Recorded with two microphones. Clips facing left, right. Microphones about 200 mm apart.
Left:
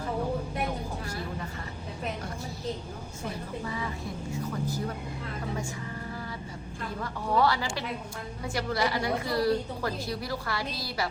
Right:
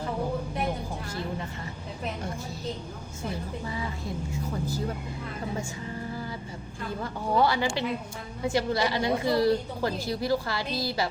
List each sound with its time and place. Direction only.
7.0 s a woman's voice: 25° right (ahead or behind)